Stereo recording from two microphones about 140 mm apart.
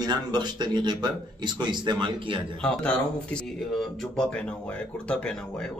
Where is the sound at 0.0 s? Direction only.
30° right (ahead or behind).